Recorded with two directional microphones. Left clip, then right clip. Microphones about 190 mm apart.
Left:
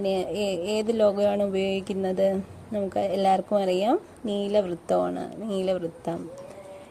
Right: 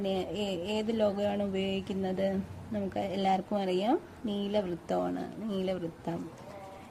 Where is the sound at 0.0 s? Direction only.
20° left (ahead or behind).